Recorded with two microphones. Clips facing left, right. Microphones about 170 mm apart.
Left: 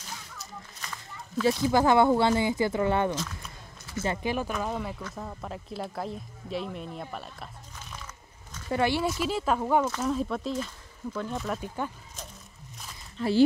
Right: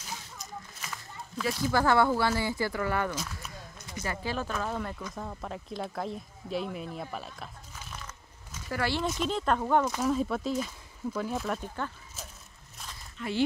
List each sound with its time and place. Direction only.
1.4 s speech: 20° left (ahead or behind); by 7.4 s centre (ahead or behind)
8.6 s speech: 20° left (ahead or behind)
9.0 s speech: 5° left (ahead or behind)
9.8 s speech: 10° right (ahead or behind)
13.2 s speech: 35° left (ahead or behind)